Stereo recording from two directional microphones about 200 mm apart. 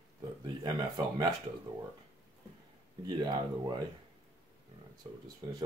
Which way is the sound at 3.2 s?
20° right (ahead or behind).